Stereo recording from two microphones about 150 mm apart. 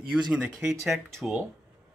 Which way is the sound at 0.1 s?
5° right (ahead or behind).